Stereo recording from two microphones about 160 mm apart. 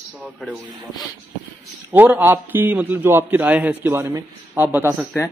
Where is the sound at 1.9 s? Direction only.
10° right (ahead or behind).